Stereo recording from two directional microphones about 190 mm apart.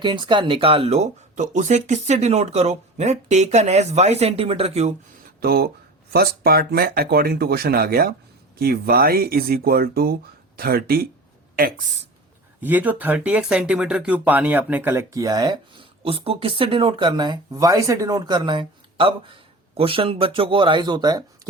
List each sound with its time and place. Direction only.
0.0 s speech: 25° right (ahead or behind)
5.4 s speech: 55° right (ahead or behind)
12.6 s speech: 10° right (ahead or behind)